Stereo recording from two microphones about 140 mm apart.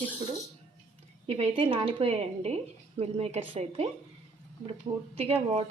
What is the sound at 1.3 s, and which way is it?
A woman's voice, 45° right (ahead or behind).